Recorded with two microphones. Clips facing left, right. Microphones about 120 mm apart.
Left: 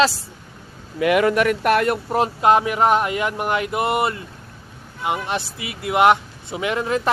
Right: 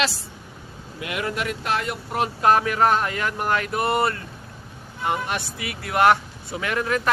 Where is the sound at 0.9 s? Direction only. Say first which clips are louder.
Left 11 dB; 70° left (ahead or behind).